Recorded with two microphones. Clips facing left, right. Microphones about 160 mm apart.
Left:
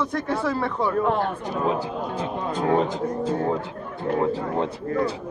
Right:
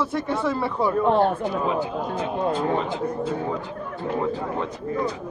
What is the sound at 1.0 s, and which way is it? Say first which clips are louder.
Speech: right 4 dB; 30° right (ahead or behind).